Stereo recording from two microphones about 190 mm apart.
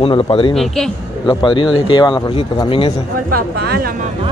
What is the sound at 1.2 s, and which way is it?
A man's voice, 25° left (ahead or behind).